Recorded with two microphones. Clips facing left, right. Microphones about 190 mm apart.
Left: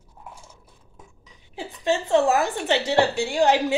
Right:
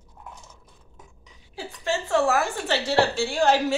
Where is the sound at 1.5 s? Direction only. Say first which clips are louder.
Left 4 dB; 20° left (ahead or behind).